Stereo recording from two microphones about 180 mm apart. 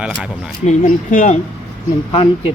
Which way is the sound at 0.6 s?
45° left (ahead or behind).